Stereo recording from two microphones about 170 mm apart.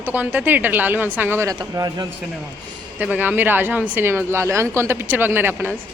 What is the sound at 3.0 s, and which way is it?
Speech, 10° right (ahead or behind).